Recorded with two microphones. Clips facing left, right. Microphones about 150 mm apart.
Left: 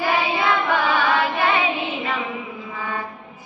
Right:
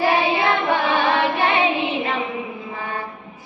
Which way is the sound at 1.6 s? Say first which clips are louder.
Right 4 dB; 40° right (ahead or behind).